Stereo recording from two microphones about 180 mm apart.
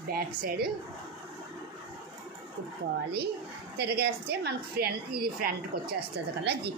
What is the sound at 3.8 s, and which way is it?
A woman's voice, 65° right (ahead or behind).